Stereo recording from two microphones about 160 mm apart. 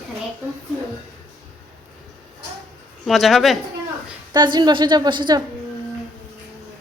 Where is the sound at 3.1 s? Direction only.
Centre (ahead or behind).